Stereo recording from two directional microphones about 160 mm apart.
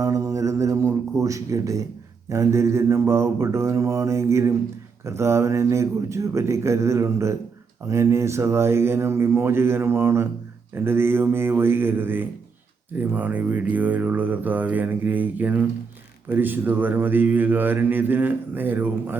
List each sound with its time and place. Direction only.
0.0 s speech: 20° right (ahead or behind)